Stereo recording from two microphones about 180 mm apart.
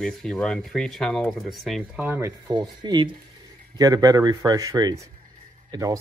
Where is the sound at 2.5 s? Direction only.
25° right (ahead or behind).